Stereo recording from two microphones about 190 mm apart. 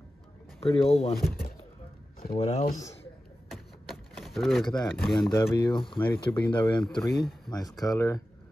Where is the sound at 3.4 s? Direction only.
Centre (ahead or behind).